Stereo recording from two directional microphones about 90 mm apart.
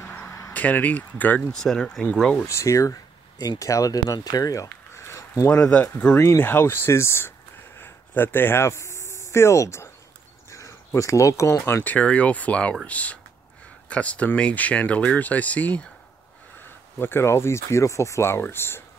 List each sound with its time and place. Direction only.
0.5 s speech: 15° left (ahead or behind)
1.5 s speech: 5° left (ahead or behind)
2.4 s speech: 35° left (ahead or behind); by 6.1 s 15° left (ahead or behind)
6.1 s speech: 30° left (ahead or behind)
7.8 s a sound: 20° left (ahead or behind)
10.5 s speech: 35° left (ahead or behind); by 15.9 s 15° left (ahead or behind)
17.0 s speech: 25° left (ahead or behind)